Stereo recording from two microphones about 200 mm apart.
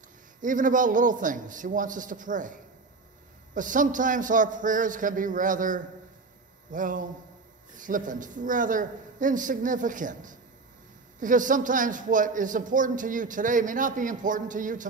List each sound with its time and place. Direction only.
0.4 s a man's voice: 40° right (ahead or behind)